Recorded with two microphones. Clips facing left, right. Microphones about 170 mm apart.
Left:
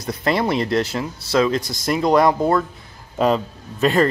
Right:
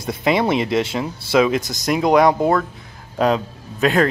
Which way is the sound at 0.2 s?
5° right (ahead or behind).